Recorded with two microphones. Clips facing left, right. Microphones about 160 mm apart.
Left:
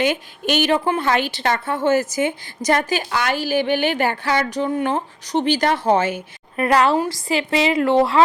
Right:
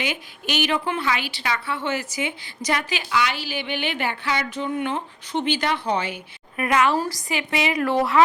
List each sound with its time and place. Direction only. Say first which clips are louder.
0.0 s a woman's voice: left 8 dB; 50° left (ahead or behind); by 8.2 s 25° left (ahead or behind)